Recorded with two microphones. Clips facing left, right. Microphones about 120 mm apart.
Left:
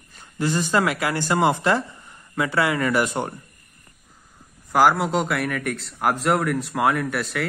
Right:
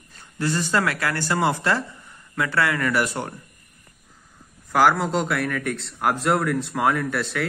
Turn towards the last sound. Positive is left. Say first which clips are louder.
# even
turn(degrees=5)  # may be behind; listen again after turning